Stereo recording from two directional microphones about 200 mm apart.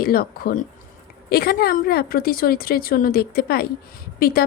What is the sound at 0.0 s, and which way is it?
Speech, 50° left (ahead or behind).